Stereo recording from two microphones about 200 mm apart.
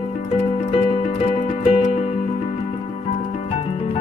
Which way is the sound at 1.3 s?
25° left (ahead or behind).